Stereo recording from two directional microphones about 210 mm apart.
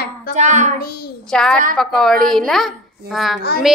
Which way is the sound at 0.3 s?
35° right (ahead or behind).